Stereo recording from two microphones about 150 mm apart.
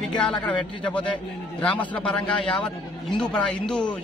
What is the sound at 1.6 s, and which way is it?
Speech, 10° left (ahead or behind).